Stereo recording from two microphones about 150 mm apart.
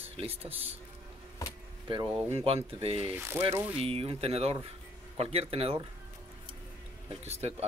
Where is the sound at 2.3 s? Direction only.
40° right (ahead or behind).